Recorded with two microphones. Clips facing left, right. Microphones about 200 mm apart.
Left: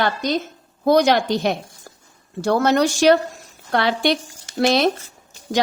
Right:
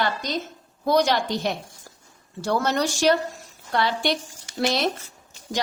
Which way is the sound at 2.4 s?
60° left (ahead or behind).